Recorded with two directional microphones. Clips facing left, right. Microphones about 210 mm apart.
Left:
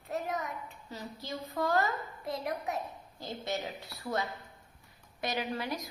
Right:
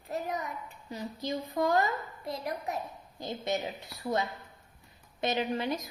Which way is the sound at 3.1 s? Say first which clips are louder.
Right 4 dB; 20° right (ahead or behind).